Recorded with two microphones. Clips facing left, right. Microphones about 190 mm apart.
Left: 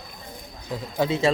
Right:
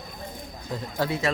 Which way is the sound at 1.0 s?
20° left (ahead or behind).